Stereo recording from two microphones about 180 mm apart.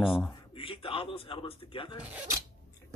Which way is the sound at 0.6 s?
30° left (ahead or behind).